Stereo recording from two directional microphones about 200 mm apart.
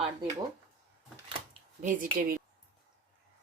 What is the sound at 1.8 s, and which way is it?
Speech, 45° right (ahead or behind).